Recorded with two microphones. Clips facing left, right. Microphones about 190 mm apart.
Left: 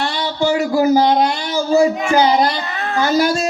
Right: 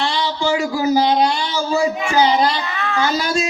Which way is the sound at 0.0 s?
55° left (ahead or behind).